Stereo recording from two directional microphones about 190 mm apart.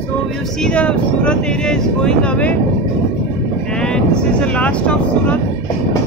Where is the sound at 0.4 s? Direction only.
5° left (ahead or behind).